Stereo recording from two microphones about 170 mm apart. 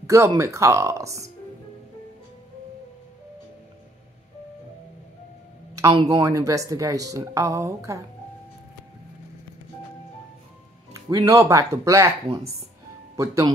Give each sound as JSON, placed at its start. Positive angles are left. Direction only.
{"t": 0.0, "sound": "speech", "side_deg": -20}
{"t": 5.8, "sound": "speech", "side_deg": -20}
{"t": 10.9, "sound": "speech", "side_deg": -20}